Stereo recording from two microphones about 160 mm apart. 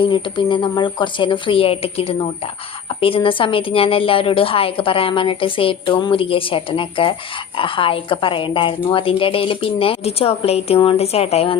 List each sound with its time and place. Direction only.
0.0 s a woman's voice: 30° left (ahead or behind)